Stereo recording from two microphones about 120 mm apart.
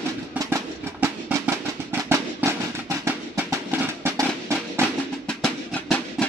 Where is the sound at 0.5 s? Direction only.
20° right (ahead or behind).